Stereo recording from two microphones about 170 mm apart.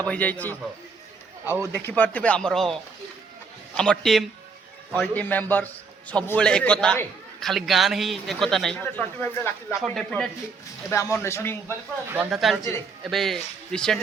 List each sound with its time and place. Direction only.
0.1 s speech: 10° left (ahead or behind)
1.5 s a man's voice: 15° right (ahead or behind)
1.8 s speech: 10° left (ahead or behind)
3.8 s a man's voice: centre (ahead or behind)
10.8 s speech: 15° left (ahead or behind)
12.3 s a man's voice: centre (ahead or behind)